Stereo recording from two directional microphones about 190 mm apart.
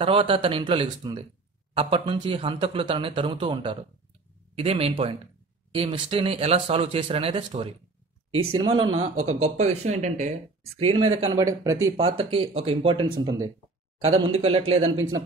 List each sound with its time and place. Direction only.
0.0 s speech: 30° right (ahead or behind)
9.1 s speech: 90° right
9.4 s speech: 35° right (ahead or behind)
11.4 s speech: 15° right (ahead or behind)
12.0 s speech: 30° right (ahead or behind)
13.2 s speech: 20° right (ahead or behind)
14.0 s speech: 30° right (ahead or behind)